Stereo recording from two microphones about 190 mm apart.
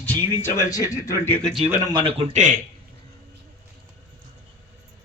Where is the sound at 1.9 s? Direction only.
30° right (ahead or behind).